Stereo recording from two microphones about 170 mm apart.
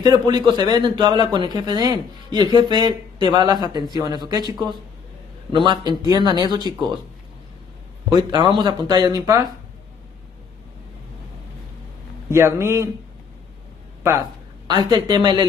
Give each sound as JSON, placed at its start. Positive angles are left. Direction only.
{"t": 0.0, "sound": "a man's voice", "side_deg": -25}
{"t": 8.1, "sound": "a man's voice", "side_deg": -25}
{"t": 12.3, "sound": "a man's voice", "side_deg": -15}
{"t": 14.7, "sound": "a man's voice", "side_deg": -25}